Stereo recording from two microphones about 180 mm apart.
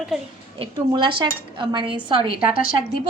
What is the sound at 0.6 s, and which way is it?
Speech, 25° right (ahead or behind).